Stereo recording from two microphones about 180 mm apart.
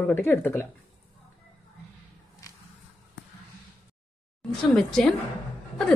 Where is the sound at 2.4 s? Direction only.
20° left (ahead or behind).